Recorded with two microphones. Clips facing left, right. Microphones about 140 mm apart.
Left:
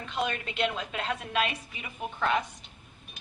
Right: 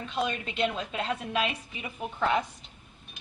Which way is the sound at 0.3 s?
30° right (ahead or behind).